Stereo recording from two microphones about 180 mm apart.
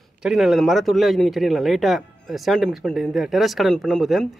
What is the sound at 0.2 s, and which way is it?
A man's voice, centre (ahead or behind).